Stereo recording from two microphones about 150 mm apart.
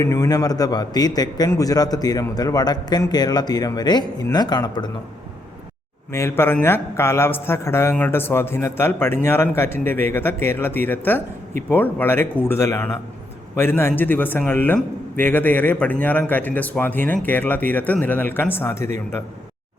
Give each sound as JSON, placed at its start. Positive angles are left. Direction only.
{"t": 0.0, "sound": "a man's voice", "side_deg": 20}
{"t": 6.1, "sound": "a man's voice", "side_deg": 15}